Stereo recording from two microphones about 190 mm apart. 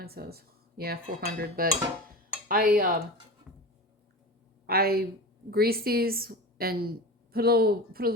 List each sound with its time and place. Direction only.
0.0 s dishes: 55° right (ahead or behind)
4.6 s speech: 55° right (ahead or behind)
5.5 s dishes: 55° right (ahead or behind)
7.3 s speech: 55° right (ahead or behind)